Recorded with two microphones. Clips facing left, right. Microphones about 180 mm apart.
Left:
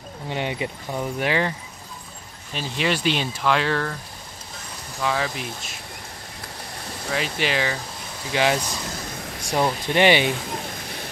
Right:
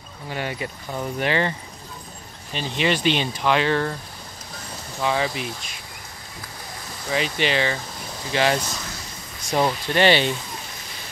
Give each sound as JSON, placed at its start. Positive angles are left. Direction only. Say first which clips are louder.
{"t": 0.3, "sound": "speech", "louder": "left 2 dB", "side_deg": 20}
{"t": 2.5, "sound": "speech", "louder": "right 2 dB", "side_deg": 5}
{"t": 5.0, "sound": "speech", "louder": "right 2 dB", "side_deg": -5}
{"t": 7.1, "sound": "speech", "louder": "right 2 dB", "side_deg": 0}